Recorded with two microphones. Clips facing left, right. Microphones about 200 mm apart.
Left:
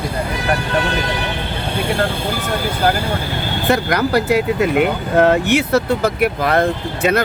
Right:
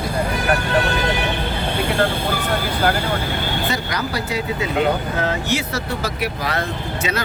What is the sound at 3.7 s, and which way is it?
Speech, 60° left (ahead or behind).